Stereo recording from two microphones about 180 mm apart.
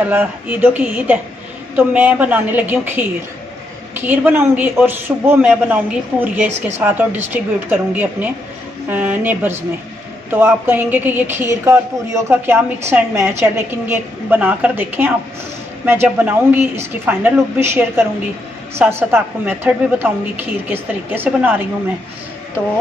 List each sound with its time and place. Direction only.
0.0 s a man's voice: 10° right (ahead or behind)